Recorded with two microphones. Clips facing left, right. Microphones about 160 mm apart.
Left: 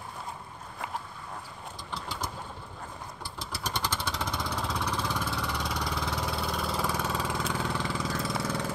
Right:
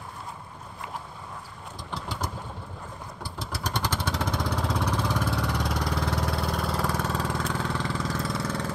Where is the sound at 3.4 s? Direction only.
15° right (ahead or behind).